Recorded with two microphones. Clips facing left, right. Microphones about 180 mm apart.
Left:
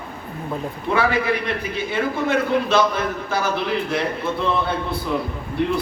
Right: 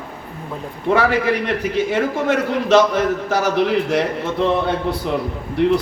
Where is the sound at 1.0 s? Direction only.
90° right.